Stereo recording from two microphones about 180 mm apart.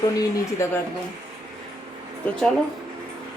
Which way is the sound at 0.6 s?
15° left (ahead or behind).